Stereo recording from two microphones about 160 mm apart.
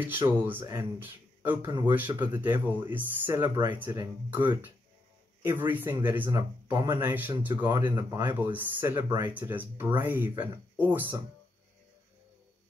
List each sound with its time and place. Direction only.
0.0 s speech: 10° right (ahead or behind)
0.6 s speech: 25° right (ahead or behind)
1.4 s speech: 10° right (ahead or behind)
7.0 s speech: 10° right (ahead or behind)
8.3 s speech: 10° right (ahead or behind)